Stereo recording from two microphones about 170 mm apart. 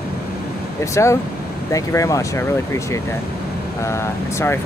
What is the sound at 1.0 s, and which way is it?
Speech, 15° left (ahead or behind).